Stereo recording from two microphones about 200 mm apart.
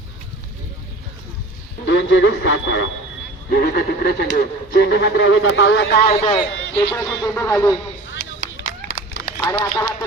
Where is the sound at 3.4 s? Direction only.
50° left (ahead or behind).